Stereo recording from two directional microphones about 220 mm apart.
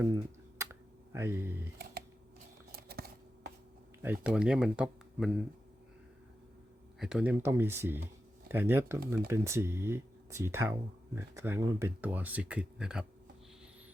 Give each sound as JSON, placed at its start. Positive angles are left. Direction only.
{"t": 0.6, "sound": "a sound", "side_deg": -10}
{"t": 2.7, "sound": "scissors", "side_deg": -45}
{"t": 4.0, "sound": "speech", "side_deg": -5}
{"t": 7.0, "sound": "speech", "side_deg": -5}